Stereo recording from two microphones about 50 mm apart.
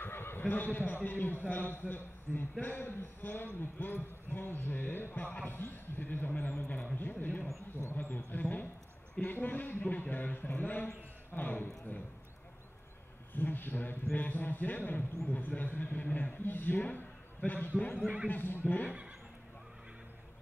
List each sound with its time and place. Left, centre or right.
0.0 s a sound: left
0.4 s a man's voice: left
13.3 s a man's voice: left
18.0 s speech: centre
18.3 s speech: left